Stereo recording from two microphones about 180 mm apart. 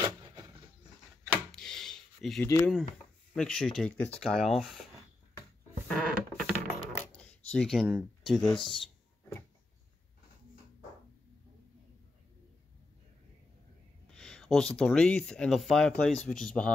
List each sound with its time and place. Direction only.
1.5 s a sound: centre (ahead or behind)
2.4 s speech: 15° left (ahead or behind)
3.3 s speech: 5° left (ahead or behind)
5.9 s a sound: 5° left (ahead or behind)
7.5 s speech: centre (ahead or behind)
14.0 s speech: 5° left (ahead or behind)